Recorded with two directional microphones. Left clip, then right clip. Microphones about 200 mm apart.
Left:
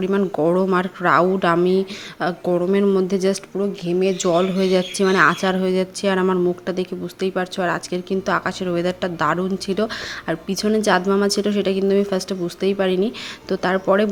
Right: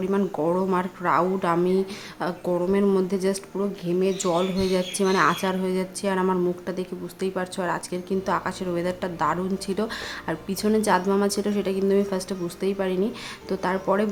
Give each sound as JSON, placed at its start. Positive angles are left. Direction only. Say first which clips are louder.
{"t": 0.0, "sound": "speech", "louder": "left 5 dB", "side_deg": 20}